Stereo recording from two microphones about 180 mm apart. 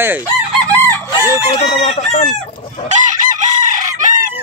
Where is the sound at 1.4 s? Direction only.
30° left (ahead or behind).